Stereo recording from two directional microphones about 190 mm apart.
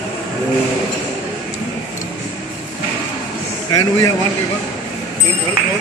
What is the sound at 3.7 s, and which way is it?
Speech, 20° left (ahead or behind).